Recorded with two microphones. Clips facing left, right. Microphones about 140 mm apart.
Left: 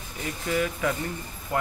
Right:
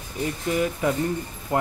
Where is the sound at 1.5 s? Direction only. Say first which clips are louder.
Right 4 dB; 25° right (ahead or behind).